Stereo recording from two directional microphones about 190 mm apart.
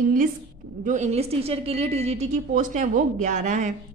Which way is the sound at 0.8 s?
40° right (ahead or behind).